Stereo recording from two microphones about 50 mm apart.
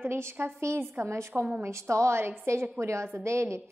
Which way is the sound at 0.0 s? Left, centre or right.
Right.